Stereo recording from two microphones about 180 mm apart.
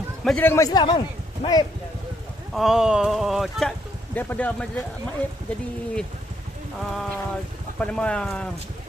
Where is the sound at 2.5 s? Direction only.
Centre (ahead or behind).